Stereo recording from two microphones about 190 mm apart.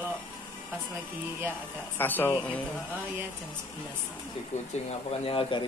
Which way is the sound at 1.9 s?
10° left (ahead or behind).